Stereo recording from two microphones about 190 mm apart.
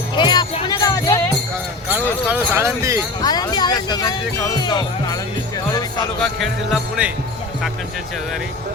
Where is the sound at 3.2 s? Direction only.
20° left (ahead or behind).